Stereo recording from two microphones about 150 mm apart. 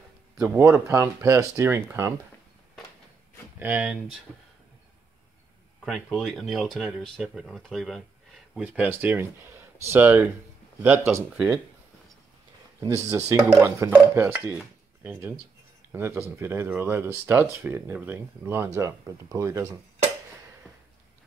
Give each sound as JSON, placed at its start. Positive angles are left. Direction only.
{"t": 0.4, "sound": "speech", "side_deg": -15}
{"t": 3.5, "sound": "speech", "side_deg": -10}
{"t": 5.9, "sound": "speech", "side_deg": 0}
{"t": 8.5, "sound": "speech", "side_deg": -10}
{"t": 12.8, "sound": "speech", "side_deg": -20}